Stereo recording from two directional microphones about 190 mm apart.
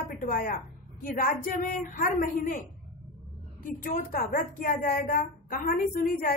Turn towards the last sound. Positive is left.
turn(degrees=50)  # may be behind; listen again after turning